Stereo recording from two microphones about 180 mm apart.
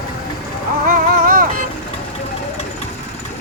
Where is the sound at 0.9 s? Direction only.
50° right (ahead or behind).